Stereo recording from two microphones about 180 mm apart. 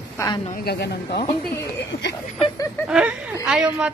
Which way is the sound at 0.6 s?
65° left (ahead or behind).